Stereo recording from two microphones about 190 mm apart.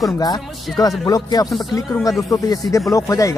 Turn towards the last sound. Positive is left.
turn(degrees=15)  # may be behind; listen again after turning